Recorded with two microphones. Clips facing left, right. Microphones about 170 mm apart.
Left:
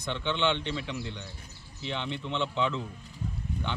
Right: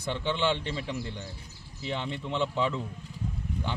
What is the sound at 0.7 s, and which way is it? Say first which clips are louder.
Speech: right 1 dB; 40° right (ahead or behind).